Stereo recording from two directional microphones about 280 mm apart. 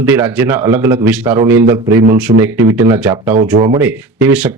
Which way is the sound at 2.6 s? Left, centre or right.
Right.